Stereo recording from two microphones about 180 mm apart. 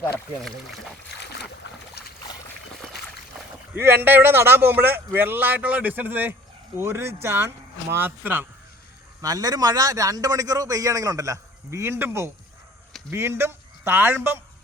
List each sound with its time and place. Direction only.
1.2 s boat: 65° left (ahead or behind)
3.8 s a man's voice: 10° right (ahead or behind)